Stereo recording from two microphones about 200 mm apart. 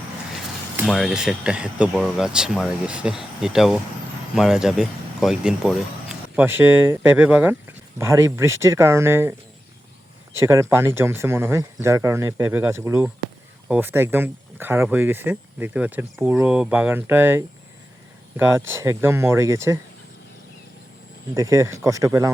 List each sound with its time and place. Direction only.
0.9 s speech: centre (ahead or behind)
10.4 s speech: 15° right (ahead or behind)
21.3 s speech: 15° right (ahead or behind)